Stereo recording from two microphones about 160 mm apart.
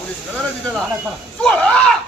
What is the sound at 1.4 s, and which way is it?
Speech, 5° left (ahead or behind).